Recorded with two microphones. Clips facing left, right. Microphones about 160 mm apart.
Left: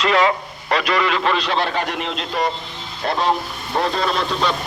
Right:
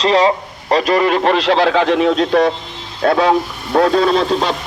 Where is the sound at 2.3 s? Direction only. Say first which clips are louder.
Right 9 dB; 75° right (ahead or behind).